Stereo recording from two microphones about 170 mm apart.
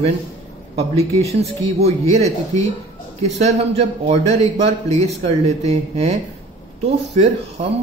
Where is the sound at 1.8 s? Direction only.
40° right (ahead or behind).